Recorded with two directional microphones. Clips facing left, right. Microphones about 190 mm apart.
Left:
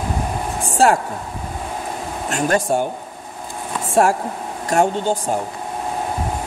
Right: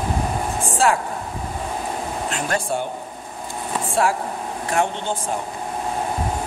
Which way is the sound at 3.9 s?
45° left (ahead or behind).